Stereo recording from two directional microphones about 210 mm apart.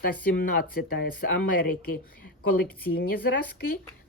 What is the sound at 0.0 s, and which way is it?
Speech, 45° left (ahead or behind).